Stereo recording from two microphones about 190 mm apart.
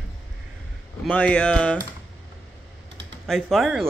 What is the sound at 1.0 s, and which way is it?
Speech, 5° left (ahead or behind).